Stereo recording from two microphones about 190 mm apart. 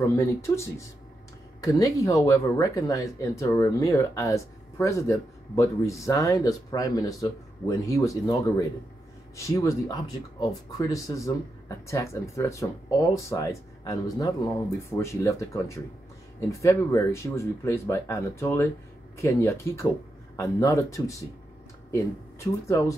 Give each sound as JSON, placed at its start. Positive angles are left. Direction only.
{"t": 0.0, "sound": "speech", "side_deg": 15}